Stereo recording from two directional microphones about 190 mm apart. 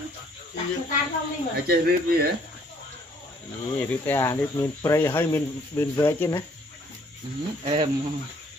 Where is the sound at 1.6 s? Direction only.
55° right (ahead or behind).